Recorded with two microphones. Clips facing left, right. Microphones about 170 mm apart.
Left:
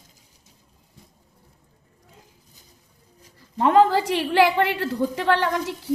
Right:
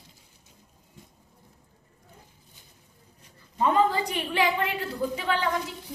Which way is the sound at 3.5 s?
80° left.